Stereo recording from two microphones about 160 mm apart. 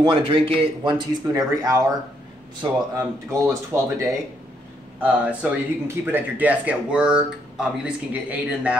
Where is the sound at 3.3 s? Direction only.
15° right (ahead or behind).